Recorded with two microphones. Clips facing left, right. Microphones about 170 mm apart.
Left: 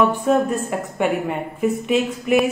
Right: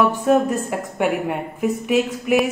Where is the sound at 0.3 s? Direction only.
10° right (ahead or behind).